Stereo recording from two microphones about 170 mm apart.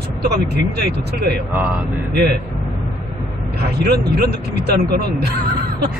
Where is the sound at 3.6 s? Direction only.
70° right (ahead or behind).